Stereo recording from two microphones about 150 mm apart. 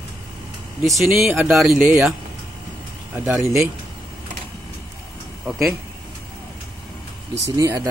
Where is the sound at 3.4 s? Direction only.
20° right (ahead or behind).